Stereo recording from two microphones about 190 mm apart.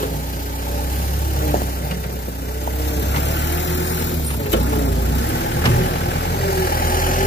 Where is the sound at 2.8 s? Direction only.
65° left (ahead or behind).